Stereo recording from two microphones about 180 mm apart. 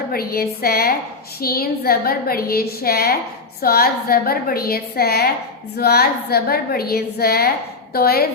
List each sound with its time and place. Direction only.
0.1 s a woman's voice: 55° left (ahead or behind)